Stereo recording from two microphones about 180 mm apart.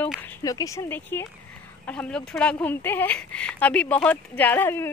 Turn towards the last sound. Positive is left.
turn(degrees=10)  # may be behind; listen again after turning